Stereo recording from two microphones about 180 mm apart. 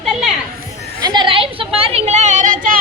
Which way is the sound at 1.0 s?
25° right (ahead or behind).